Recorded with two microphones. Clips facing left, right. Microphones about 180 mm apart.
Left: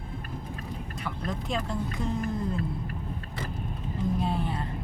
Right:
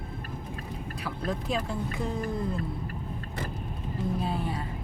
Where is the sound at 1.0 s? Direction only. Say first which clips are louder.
Right 2 dB; 5° right (ahead or behind).